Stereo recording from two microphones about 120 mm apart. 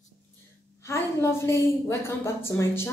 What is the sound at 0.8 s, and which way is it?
A woman's voice, 25° left (ahead or behind).